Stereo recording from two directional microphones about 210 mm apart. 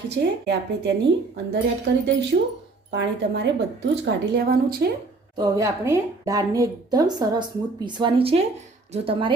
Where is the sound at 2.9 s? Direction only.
55° right (ahead or behind).